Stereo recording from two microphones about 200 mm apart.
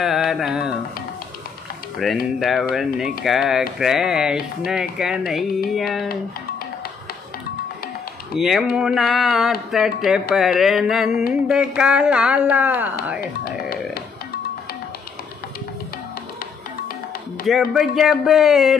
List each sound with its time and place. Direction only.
0.0 s music: centre (ahead or behind)
2.0 s speech: centre (ahead or behind)
8.4 s speech: centre (ahead or behind)
13.2 s speech: 50° left (ahead or behind)
17.5 s speech: centre (ahead or behind)